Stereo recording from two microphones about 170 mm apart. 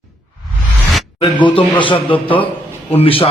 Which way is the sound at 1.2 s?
30° left (ahead or behind).